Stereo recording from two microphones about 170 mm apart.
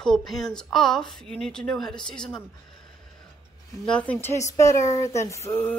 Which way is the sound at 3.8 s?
5° left (ahead or behind).